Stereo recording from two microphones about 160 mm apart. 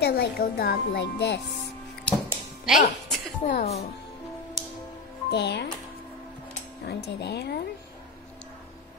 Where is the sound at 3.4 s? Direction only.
60° left (ahead or behind).